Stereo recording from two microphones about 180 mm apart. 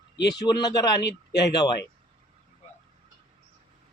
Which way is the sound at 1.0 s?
70° left (ahead or behind).